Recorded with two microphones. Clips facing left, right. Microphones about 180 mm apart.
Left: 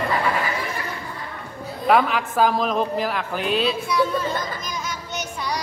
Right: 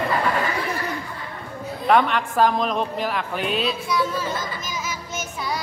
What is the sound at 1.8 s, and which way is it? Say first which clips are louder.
A woman's voice: even; 5° left (ahead or behind).